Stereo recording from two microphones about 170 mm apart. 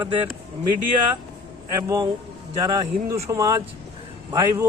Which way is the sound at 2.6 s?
20° right (ahead or behind).